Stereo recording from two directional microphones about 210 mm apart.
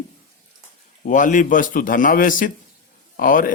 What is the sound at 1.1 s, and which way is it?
Speech, 40° left (ahead or behind).